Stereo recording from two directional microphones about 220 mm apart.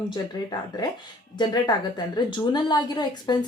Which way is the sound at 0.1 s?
20° left (ahead or behind).